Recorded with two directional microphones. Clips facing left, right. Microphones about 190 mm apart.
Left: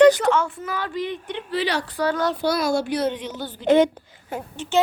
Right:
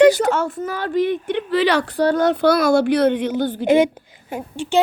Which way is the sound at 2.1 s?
55° right (ahead or behind).